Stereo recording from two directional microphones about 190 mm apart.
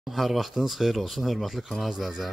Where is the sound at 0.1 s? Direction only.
Centre (ahead or behind).